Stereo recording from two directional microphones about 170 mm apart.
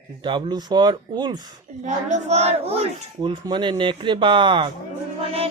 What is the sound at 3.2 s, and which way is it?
Speech, 25° right (ahead or behind).